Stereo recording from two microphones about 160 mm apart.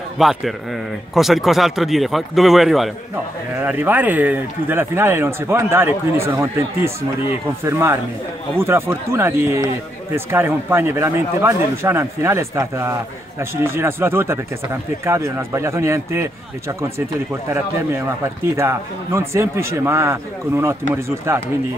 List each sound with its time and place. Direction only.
0.2 s speech: centre (ahead or behind)
3.5 s speech: 10° right (ahead or behind)